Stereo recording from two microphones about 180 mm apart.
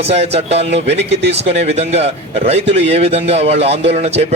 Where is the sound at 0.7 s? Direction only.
75° right (ahead or behind).